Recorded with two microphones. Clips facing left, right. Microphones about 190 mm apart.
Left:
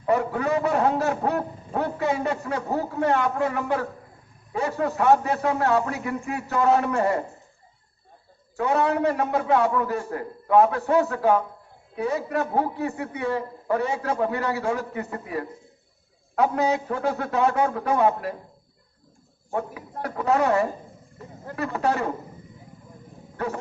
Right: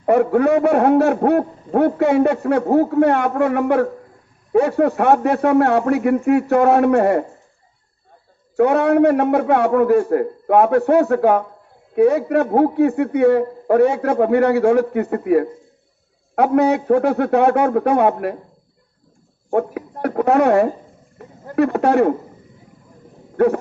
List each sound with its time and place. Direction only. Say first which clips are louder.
0.0 s a man's voice: right 9 dB; 60° right (ahead or behind)
8.5 s a man's voice: right 9 dB; 65° right (ahead or behind)
19.5 s a man's voice: right 10 dB; 60° right (ahead or behind)
23.4 s a man's voice: right 14 dB; 60° right (ahead or behind)